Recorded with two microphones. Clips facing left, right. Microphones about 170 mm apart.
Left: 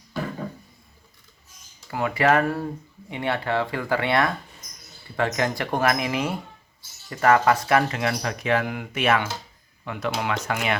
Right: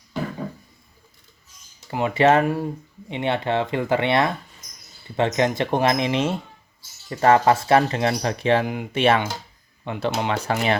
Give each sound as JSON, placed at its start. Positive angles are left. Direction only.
{"t": 1.9, "sound": "speech", "side_deg": -20}